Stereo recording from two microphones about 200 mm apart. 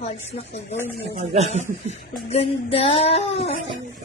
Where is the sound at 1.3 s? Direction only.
35° right (ahead or behind).